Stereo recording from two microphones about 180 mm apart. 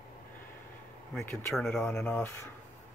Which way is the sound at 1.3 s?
5° left (ahead or behind).